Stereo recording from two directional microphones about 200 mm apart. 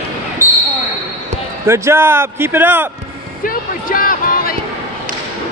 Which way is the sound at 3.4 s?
45° left (ahead or behind).